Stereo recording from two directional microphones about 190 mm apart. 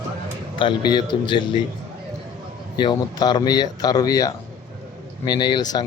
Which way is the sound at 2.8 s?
25° left (ahead or behind).